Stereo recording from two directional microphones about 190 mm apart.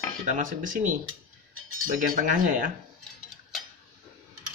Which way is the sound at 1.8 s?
45° right (ahead or behind).